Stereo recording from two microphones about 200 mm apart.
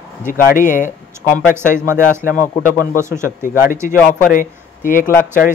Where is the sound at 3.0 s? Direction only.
15° right (ahead or behind).